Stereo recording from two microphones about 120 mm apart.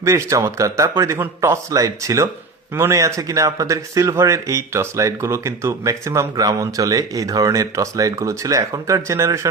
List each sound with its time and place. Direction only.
0.0 s speech: 25° right (ahead or behind)